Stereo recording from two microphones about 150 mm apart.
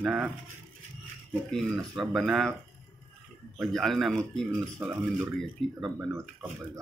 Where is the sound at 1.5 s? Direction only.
5° left (ahead or behind).